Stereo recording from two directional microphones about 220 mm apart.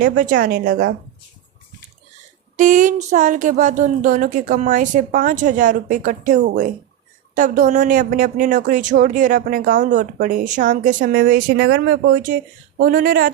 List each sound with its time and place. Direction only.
0.0 s speech: 35° right (ahead or behind)
2.6 s speech: 35° right (ahead or behind)